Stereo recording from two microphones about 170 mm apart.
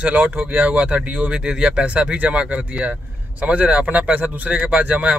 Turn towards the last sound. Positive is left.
turn(degrees=-5)  # may be behind; listen again after turning